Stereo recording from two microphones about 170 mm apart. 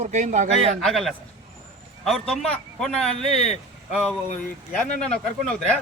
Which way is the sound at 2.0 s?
Centre (ahead or behind).